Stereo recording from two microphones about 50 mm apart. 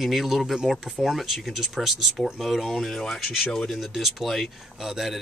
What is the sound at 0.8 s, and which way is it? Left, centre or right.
Speech, centre.